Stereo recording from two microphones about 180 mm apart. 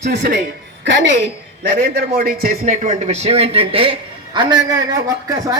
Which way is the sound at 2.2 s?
55° right (ahead or behind).